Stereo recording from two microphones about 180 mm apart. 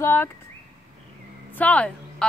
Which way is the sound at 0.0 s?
10° left (ahead or behind).